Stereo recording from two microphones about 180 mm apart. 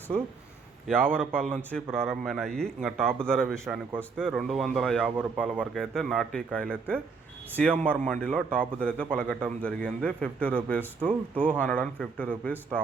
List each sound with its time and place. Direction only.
0.9 s a man's voice: 5° left (ahead or behind)